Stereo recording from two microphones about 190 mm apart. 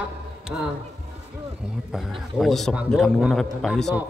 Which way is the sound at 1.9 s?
Centre (ahead or behind).